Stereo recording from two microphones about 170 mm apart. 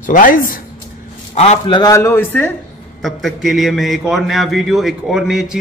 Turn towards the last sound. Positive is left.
turn(degrees=-5)  # may be behind; listen again after turning